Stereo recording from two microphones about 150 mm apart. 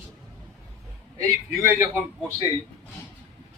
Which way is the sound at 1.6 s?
15° right (ahead or behind).